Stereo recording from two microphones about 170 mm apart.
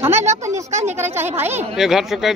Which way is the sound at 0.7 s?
40° right (ahead or behind).